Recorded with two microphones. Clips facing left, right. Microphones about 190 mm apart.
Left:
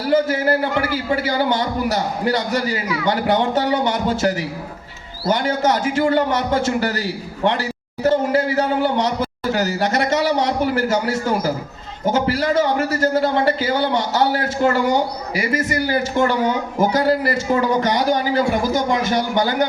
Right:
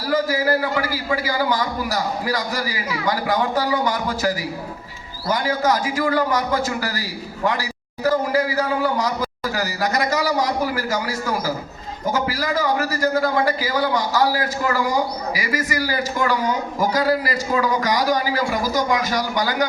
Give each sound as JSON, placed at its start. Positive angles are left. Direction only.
{"t": 0.0, "sound": "a man's voice", "side_deg": 25}
{"t": 15.4, "sound": "a man's voice", "side_deg": 55}
{"t": 16.1, "sound": "a man's voice", "side_deg": 25}